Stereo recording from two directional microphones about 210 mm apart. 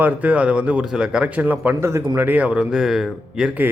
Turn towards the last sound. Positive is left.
turn(degrees=-5)  # may be behind; listen again after turning